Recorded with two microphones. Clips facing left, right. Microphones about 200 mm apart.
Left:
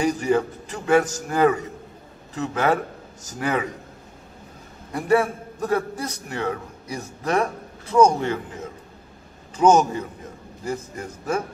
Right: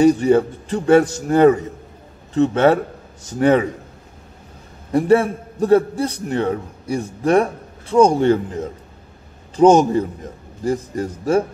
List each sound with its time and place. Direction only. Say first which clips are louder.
0.2 s a man's voice: right 6 dB; 30° right (ahead or behind)
4.9 s a man's voice: right 6 dB; 30° right (ahead or behind)